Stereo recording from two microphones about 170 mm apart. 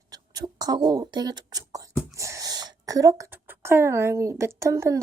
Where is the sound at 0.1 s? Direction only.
20° right (ahead or behind).